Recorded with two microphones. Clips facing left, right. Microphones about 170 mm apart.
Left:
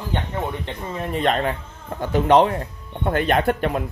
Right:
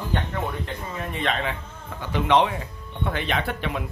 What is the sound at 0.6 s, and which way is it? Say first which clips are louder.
Speech: left 3 dB; 40° left (ahead or behind).